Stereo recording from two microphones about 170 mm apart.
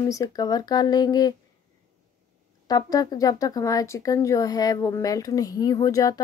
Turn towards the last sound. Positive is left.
turn(degrees=20)  # may be behind; listen again after turning